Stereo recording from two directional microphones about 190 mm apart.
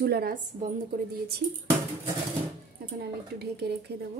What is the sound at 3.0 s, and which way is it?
Speech, 60° right (ahead or behind).